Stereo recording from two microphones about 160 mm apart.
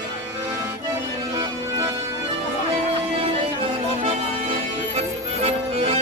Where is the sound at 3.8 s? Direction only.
35° right (ahead or behind).